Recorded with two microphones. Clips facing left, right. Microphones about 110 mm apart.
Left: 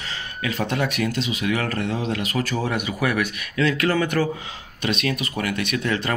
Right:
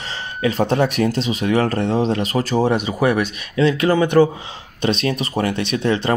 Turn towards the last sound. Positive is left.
turn(degrees=-25)  # may be behind; listen again after turning